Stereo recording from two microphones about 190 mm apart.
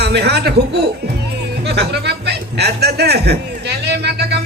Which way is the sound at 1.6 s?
60° right (ahead or behind).